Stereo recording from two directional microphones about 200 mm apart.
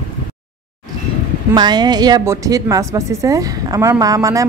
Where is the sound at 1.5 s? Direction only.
20° right (ahead or behind).